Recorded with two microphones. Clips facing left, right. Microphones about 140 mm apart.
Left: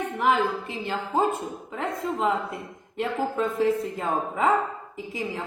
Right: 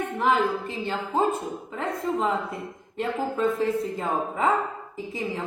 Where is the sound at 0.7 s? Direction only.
Centre (ahead or behind).